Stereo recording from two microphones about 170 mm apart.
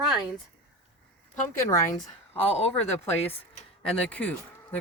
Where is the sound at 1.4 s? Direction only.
15° left (ahead or behind).